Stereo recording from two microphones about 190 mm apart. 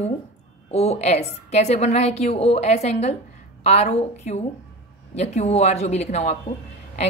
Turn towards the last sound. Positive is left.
turn(degrees=35)  # may be behind; listen again after turning